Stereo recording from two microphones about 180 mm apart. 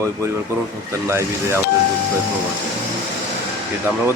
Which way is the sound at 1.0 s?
15° right (ahead or behind).